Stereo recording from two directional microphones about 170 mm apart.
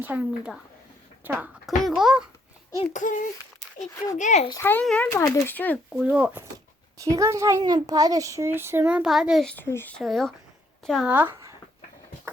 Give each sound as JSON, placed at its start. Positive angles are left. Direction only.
{"t": 0.0, "sound": "a child's voice", "side_deg": -10}
{"t": 2.9, "sound": "a sound", "side_deg": 50}
{"t": 3.9, "sound": "speech", "side_deg": 20}
{"t": 4.2, "sound": "a sound", "side_deg": 45}
{"t": 4.4, "sound": "speech", "side_deg": 15}
{"t": 5.9, "sound": "speech", "side_deg": -5}
{"t": 7.0, "sound": "a child's voice", "side_deg": -20}
{"t": 11.1, "sound": "speech", "side_deg": -10}